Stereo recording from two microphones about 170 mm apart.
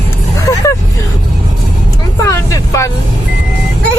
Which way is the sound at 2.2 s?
20° left (ahead or behind).